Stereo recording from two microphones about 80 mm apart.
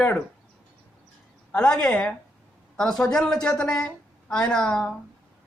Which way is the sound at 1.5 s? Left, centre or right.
Centre.